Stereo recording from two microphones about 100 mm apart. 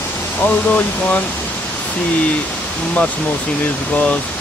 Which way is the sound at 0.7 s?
15° left (ahead or behind).